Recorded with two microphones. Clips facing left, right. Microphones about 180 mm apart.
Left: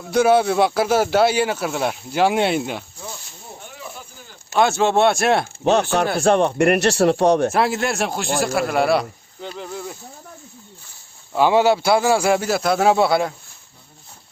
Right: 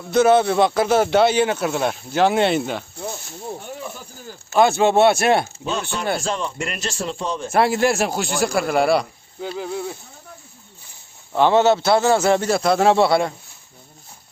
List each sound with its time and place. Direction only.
0.1 s speech: 10° left (ahead or behind)
4.5 s a man's voice: centre (ahead or behind)
5.6 s speech: 70° left (ahead or behind)
7.5 s a man's voice: centre (ahead or behind)
11.3 s speech: 10° left (ahead or behind)